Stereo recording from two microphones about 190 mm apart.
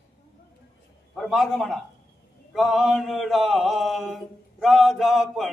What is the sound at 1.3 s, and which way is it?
Mantra, centre (ahead or behind).